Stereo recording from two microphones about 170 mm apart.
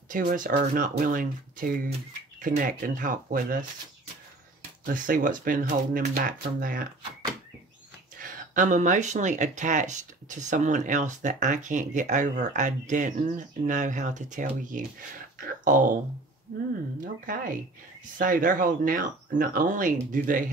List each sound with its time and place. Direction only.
0.1 s speech: 50° right (ahead or behind)
4.8 s speech: 55° right (ahead or behind)
8.2 s speech: 50° right (ahead or behind)
17.0 s speech: 55° right (ahead or behind)